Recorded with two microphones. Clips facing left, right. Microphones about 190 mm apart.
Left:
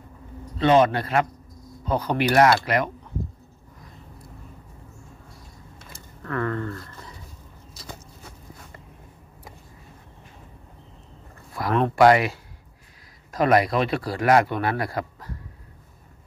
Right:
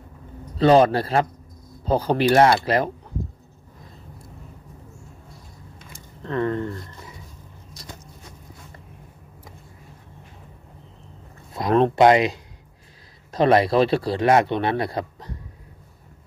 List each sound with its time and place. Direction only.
0.6 s a man's voice: 35° right (ahead or behind)
6.2 s a man's voice: 20° right (ahead or behind)
7.7 s a sound: 5° left (ahead or behind)
11.7 s a man's voice: 25° right (ahead or behind)